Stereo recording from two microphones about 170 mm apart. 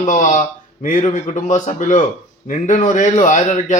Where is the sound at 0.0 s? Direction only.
50° left (ahead or behind).